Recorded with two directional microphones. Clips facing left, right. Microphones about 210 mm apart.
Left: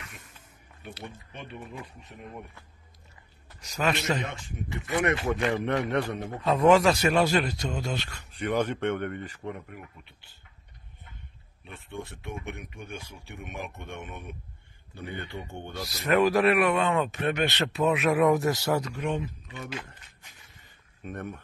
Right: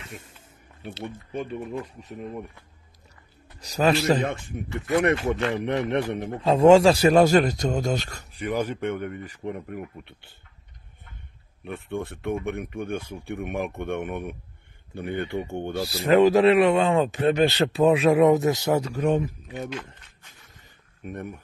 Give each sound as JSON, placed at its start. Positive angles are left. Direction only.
{"t": 1.3, "sound": "speech", "side_deg": -45}
{"t": 3.6, "sound": "a man's voice", "side_deg": -35}
{"t": 4.3, "sound": "speech", "side_deg": -55}
{"t": 4.9, "sound": "speech", "side_deg": 0}
{"t": 5.6, "sound": "a man's voice", "side_deg": -20}
{"t": 8.4, "sound": "speech", "side_deg": -10}
{"t": 9.7, "sound": "speech", "side_deg": -55}
{"t": 11.6, "sound": "speech", "side_deg": -60}
{"t": 15.8, "sound": "speech", "side_deg": -30}
{"t": 21.0, "sound": "speech", "side_deg": -10}